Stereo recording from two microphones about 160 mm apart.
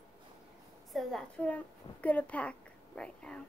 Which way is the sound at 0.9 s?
Centre (ahead or behind).